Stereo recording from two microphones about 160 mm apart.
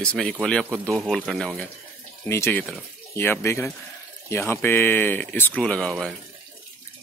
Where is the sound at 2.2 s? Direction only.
15° left (ahead or behind).